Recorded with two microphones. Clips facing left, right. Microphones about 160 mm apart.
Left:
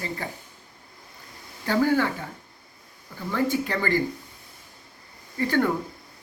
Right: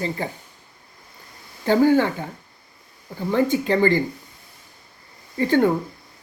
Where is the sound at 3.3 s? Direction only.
25° right (ahead or behind).